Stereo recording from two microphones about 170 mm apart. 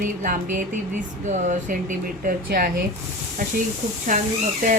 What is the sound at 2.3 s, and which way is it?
Speech, 60° right (ahead or behind).